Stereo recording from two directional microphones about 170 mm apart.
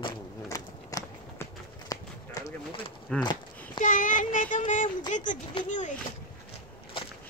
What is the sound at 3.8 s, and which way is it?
Child singing, 50° left (ahead or behind).